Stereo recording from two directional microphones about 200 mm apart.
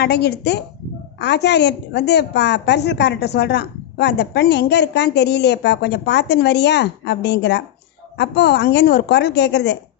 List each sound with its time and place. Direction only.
0.0 s a woman's voice: 55° left (ahead or behind)